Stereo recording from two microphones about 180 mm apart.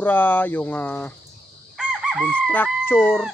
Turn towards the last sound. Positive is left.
turn(degrees=15)  # may be behind; listen again after turning